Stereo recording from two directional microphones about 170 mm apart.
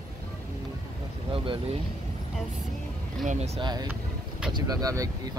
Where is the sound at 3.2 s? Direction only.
40° right (ahead or behind).